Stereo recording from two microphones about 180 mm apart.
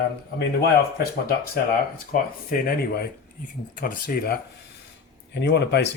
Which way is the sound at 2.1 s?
50° left (ahead or behind).